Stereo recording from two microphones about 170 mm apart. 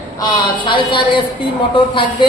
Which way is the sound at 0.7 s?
30° left (ahead or behind).